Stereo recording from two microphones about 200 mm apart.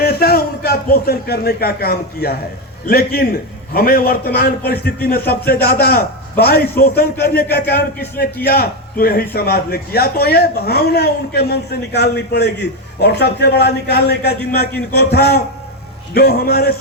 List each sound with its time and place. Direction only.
0.0 s a man's voice: 50° left (ahead or behind)